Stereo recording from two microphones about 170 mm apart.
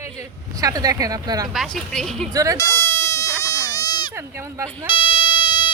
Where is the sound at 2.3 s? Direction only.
20° right (ahead or behind).